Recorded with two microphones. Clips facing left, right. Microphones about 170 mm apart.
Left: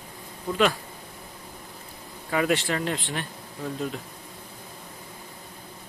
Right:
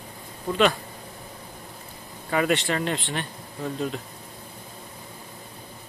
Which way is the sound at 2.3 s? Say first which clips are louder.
Right 1 dB; centre (ahead or behind).